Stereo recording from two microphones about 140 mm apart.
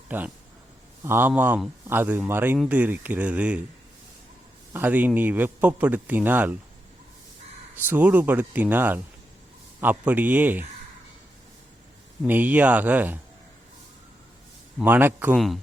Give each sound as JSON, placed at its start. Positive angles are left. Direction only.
{"t": 0.1, "sound": "speech", "side_deg": -15}
{"t": 4.7, "sound": "speech", "side_deg": -10}
{"t": 7.9, "sound": "speech", "side_deg": -15}
{"t": 12.2, "sound": "speech", "side_deg": -10}
{"t": 14.8, "sound": "speech", "side_deg": -15}